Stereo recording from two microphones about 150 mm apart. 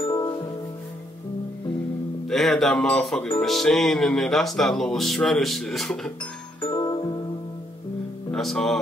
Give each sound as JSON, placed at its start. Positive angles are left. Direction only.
{"t": 0.0, "sound": "music", "side_deg": 25}
{"t": 2.2, "sound": "speech", "side_deg": 0}
{"t": 6.6, "sound": "music", "side_deg": 25}
{"t": 8.3, "sound": "speech", "side_deg": 0}